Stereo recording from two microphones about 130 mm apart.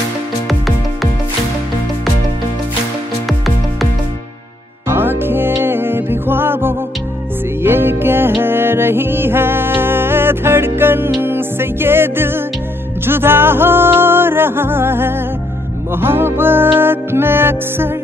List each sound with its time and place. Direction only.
4.8 s music: 15° right (ahead or behind)